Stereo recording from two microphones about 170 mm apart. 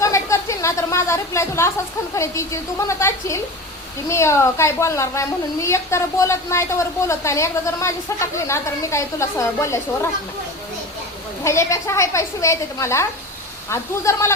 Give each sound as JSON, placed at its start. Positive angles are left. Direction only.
{"t": 0.0, "sound": "a sound", "side_deg": 15}
{"t": 2.1, "sound": "a woman's voice", "side_deg": 15}
{"t": 11.4, "sound": "a woman's voice", "side_deg": 15}